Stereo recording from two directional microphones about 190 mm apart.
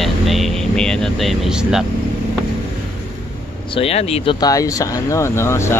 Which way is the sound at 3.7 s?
30° left (ahead or behind).